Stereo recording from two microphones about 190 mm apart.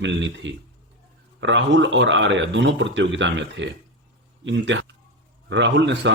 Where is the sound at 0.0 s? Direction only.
70° right (ahead or behind).